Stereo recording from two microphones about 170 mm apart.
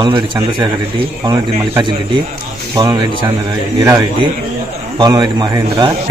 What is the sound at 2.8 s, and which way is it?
A man's voice, 25° right (ahead or behind).